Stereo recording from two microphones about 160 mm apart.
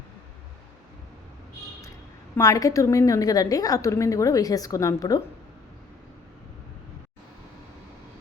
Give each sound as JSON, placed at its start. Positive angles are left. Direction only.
{"t": 2.3, "sound": "a woman's voice", "side_deg": 20}